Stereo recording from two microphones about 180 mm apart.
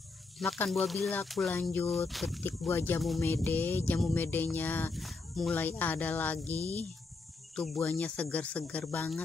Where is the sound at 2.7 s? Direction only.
15° left (ahead or behind).